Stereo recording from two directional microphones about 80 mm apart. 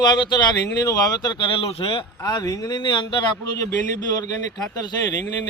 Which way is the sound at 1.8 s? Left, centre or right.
Left.